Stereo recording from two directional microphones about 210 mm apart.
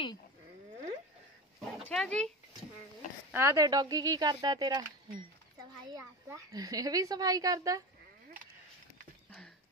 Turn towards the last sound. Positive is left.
turn(degrees=-15)  # may be behind; listen again after turning